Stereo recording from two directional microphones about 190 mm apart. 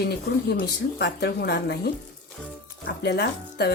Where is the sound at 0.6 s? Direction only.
60° left (ahead or behind).